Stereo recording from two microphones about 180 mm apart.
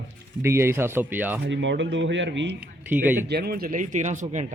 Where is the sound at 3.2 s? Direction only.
60° right (ahead or behind); by 4.5 s 45° right (ahead or behind).